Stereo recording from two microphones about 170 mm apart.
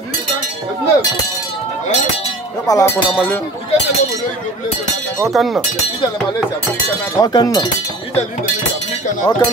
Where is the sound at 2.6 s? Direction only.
20° left (ahead or behind).